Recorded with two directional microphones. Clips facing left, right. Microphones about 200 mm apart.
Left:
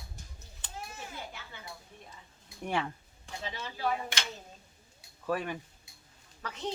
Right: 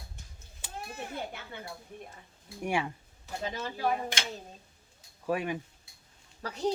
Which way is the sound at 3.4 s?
45° right (ahead or behind).